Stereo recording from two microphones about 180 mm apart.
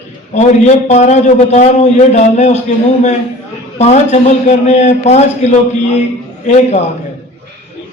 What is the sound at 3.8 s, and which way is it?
A man's voice, 40° left (ahead or behind).